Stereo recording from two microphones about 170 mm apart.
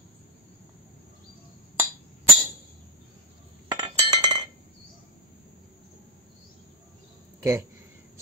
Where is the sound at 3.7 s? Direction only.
25° right (ahead or behind).